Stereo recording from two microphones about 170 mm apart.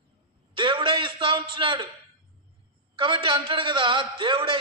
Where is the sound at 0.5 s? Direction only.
30° right (ahead or behind).